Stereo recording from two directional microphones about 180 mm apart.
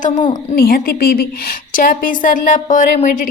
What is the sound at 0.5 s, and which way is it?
Speech, 55° left (ahead or behind).